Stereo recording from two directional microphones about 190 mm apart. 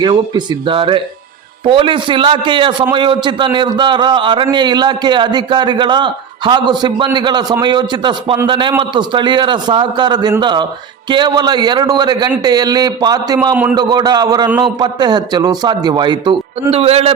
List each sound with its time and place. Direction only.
0.0 s a man's voice: 25° right (ahead or behind)